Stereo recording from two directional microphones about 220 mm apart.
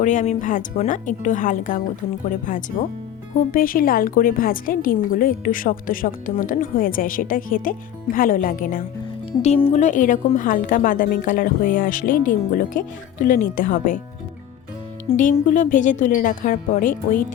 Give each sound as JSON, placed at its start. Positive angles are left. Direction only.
{"t": 0.0, "sound": "a woman's voice", "side_deg": 35}
{"t": 15.1, "sound": "a woman's voice", "side_deg": 35}